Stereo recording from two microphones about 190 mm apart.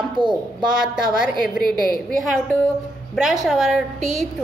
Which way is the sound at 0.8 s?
Centre (ahead or behind).